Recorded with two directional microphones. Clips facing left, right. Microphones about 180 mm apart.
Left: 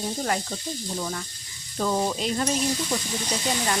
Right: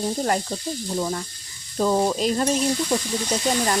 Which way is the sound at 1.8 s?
35° right (ahead or behind).